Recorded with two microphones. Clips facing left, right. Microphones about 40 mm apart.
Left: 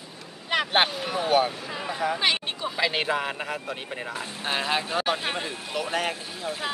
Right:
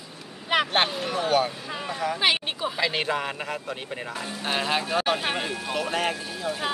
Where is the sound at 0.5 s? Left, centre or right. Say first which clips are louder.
Right 2 dB; centre.